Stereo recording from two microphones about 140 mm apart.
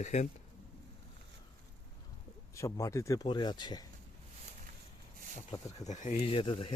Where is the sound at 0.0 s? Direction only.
55° left (ahead or behind).